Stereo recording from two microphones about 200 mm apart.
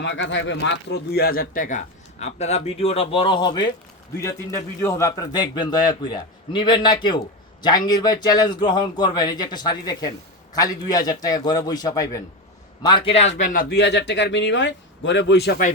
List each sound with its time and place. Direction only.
0.0 s a man's voice: 65° left (ahead or behind)